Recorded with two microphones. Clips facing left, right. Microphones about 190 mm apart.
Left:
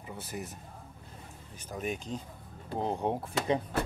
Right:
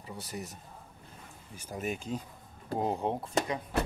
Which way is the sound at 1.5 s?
5° right (ahead or behind).